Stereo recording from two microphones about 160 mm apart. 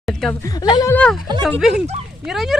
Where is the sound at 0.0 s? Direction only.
Centre (ahead or behind).